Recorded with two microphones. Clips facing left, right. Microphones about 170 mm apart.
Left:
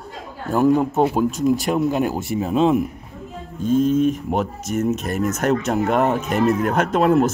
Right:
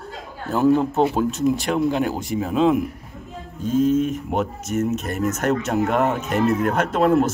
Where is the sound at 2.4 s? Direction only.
25° left (ahead or behind).